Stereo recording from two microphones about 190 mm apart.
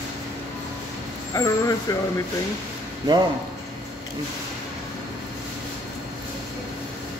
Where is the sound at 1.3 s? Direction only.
20° left (ahead or behind).